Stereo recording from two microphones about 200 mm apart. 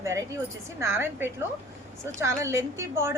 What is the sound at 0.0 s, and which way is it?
A woman's voice, 15° right (ahead or behind).